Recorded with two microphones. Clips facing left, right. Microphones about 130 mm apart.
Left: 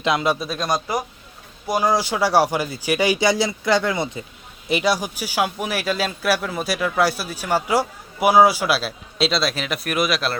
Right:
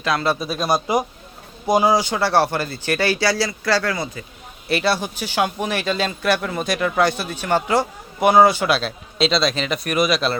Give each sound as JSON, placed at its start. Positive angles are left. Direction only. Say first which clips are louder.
{"t": 0.0, "sound": "speech", "louder": "left 1 dB", "side_deg": 15}
{"t": 0.3, "sound": "speech", "louder": "right 3 dB", "side_deg": -5}
{"t": 1.6, "sound": "speech", "louder": "right 4 dB", "side_deg": -20}
{"t": 1.9, "sound": "speech", "louder": "right 1 dB", "side_deg": 0}